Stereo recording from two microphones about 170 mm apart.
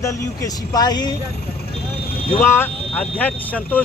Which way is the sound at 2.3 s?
10° left (ahead or behind).